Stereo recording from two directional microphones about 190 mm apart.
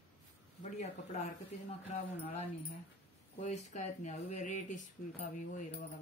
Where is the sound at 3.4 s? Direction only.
40° left (ahead or behind).